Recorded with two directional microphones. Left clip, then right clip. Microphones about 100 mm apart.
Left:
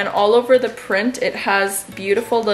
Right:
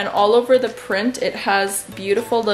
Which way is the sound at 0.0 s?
Centre (ahead or behind).